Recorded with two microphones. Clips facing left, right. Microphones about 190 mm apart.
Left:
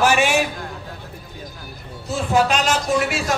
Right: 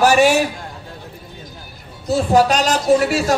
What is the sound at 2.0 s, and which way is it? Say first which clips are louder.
Speech: right 5 dB; 40° right (ahead or behind).